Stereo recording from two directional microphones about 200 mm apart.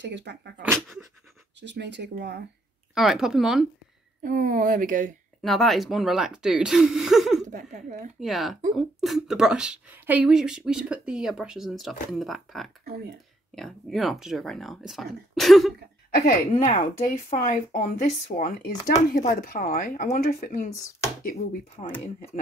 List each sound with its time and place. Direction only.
0.0 s speech: 60° right (ahead or behind)
0.6 s speech: 5° right (ahead or behind)
1.6 s speech: 60° right (ahead or behind)
2.9 s speech: centre (ahead or behind)
4.2 s speech: 45° right (ahead or behind)
5.4 s speech: centre (ahead or behind)
7.4 s speech: 40° right (ahead or behind)
8.2 s speech: centre (ahead or behind)
16.3 s speech: 40° left (ahead or behind)
20.7 s speech: 15° left (ahead or behind)
21.2 s speech: 45° left (ahead or behind)
21.8 s speech: 25° left (ahead or behind)